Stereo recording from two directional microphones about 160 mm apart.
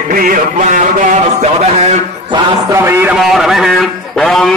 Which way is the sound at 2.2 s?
30° right (ahead or behind).